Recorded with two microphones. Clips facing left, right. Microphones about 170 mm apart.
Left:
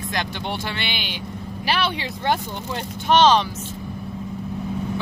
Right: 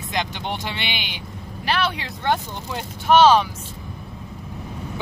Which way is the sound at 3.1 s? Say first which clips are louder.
Right 2 dB; 5° right (ahead or behind).